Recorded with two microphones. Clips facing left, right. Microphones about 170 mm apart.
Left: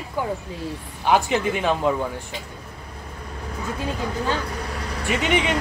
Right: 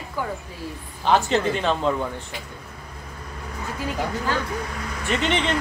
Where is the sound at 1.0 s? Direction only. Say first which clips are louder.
Even; 10° left (ahead or behind).